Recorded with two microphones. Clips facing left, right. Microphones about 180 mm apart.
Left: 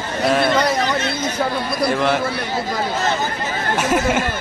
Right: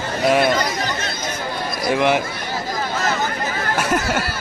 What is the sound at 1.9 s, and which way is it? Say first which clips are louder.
Speech: right 3 dB; 15° right (ahead or behind).